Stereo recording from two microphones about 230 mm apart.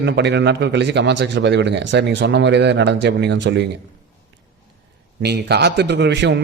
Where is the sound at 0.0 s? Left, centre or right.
Right.